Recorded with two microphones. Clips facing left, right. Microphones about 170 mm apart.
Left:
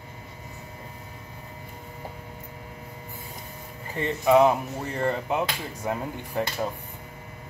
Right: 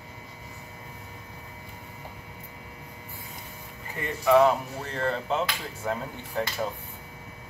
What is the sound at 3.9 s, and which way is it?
Speech, 25° left (ahead or behind).